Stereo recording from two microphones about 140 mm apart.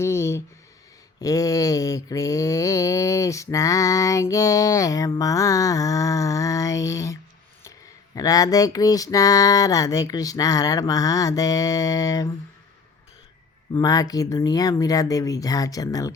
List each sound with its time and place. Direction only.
0.0 s a sound: 20° left (ahead or behind)
1.2 s mantra: 25° left (ahead or behind)
13.7 s mantra: 25° left (ahead or behind)